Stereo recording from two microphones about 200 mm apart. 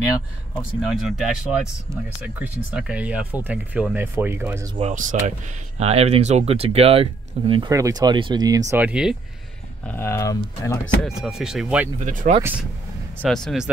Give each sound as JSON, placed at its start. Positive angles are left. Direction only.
{"t": 0.8, "sound": "speech", "side_deg": 0}
{"t": 4.7, "sound": "speech", "side_deg": -40}
{"t": 9.8, "sound": "speech", "side_deg": 10}
{"t": 11.1, "sound": "speech", "side_deg": 0}
{"t": 12.0, "sound": "speech", "side_deg": -40}
{"t": 13.2, "sound": "speech", "side_deg": 0}